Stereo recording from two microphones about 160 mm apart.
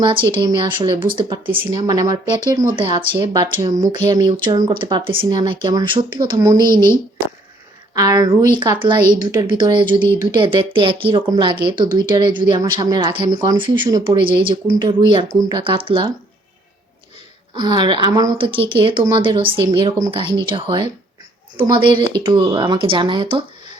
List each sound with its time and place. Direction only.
0.0 s a woman's voice: 30° right (ahead or behind)
17.5 s a woman's voice: 30° right (ahead or behind)